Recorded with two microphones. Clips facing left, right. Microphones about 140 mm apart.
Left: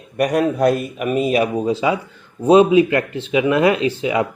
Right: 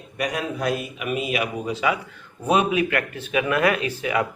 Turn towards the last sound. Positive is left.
turn(degrees=25)  # may be behind; listen again after turning